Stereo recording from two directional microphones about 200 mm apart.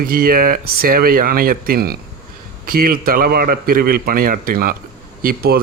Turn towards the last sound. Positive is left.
turn(degrees=-50)  # may be behind; listen again after turning